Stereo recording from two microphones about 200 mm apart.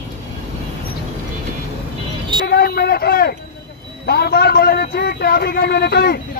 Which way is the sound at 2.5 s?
55° left (ahead or behind).